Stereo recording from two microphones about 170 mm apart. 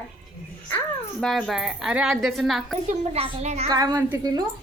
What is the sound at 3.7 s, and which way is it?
Speech, 20° right (ahead or behind).